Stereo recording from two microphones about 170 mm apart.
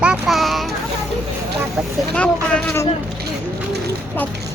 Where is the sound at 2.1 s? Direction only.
5° left (ahead or behind).